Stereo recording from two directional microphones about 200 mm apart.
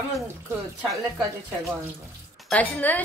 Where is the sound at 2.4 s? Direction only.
5° left (ahead or behind).